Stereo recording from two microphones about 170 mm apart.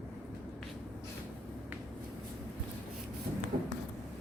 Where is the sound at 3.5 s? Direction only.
50° right (ahead or behind).